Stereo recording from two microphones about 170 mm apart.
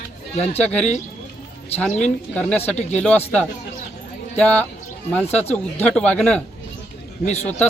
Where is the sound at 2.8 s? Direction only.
40° left (ahead or behind).